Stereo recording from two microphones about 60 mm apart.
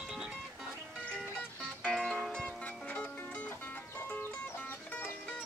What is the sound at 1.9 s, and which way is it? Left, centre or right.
Music, centre.